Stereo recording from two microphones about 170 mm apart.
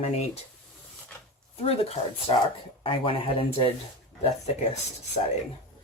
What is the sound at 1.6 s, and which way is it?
Speech, 35° left (ahead or behind).